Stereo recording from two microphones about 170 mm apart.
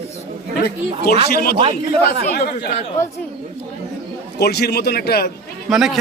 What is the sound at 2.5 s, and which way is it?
Speech, 80° left.